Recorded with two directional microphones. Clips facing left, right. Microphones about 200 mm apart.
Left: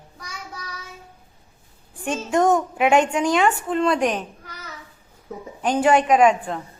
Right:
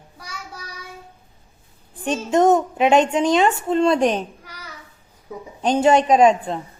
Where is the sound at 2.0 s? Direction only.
20° right (ahead or behind).